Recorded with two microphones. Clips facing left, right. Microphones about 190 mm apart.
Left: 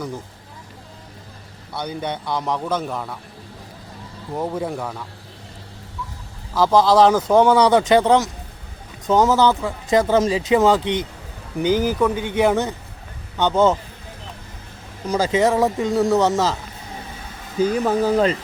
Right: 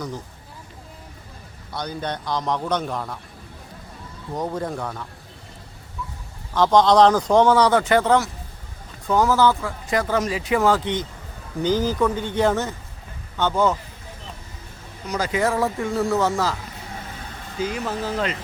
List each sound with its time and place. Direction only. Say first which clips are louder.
1.7 s a man's voice: left 2 dB; 10° left (ahead or behind)
4.4 s speech: left 2 dB; 5° left (ahead or behind)
6.5 s speech: left 1 dB; 5° left (ahead or behind); by 13.7 s 20° left (ahead or behind)
15.1 s speech: left 5 dB; 25° left (ahead or behind)
17.7 s speech: left 10 dB; 40° left (ahead or behind)